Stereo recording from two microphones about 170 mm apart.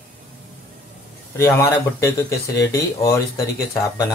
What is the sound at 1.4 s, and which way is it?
Speech, 15° left (ahead or behind).